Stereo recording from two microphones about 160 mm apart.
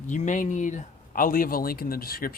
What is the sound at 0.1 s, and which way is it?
Speech, 50° left (ahead or behind).